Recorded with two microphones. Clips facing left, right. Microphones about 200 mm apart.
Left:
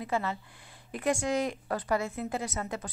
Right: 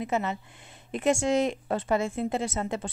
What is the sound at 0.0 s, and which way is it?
A woman's voice, 20° right (ahead or behind).